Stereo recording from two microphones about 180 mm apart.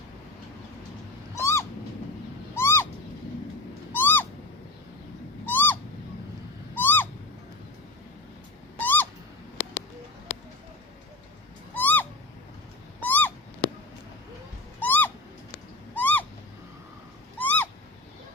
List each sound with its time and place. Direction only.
1.4 s owl: 15° left (ahead or behind)
2.6 s bird: 15° left (ahead or behind)
3.9 s owl: 10° left (ahead or behind)
5.5 s owl: 10° left (ahead or behind)
8.8 s owl: 10° left (ahead or behind)
11.7 s owl: 10° left (ahead or behind)
14.8 s a sound: 10° left (ahead or behind)
16.0 s owl: 10° left (ahead or behind)
17.4 s owl: 10° left (ahead or behind)